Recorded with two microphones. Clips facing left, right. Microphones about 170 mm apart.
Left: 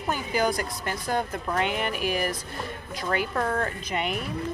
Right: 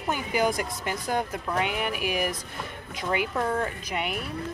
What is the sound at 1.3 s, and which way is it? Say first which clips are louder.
Speech: left 1 dB; 5° right (ahead or behind).